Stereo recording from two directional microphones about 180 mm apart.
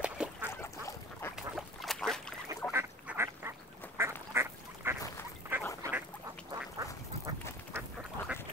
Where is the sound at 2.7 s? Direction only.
15° right (ahead or behind).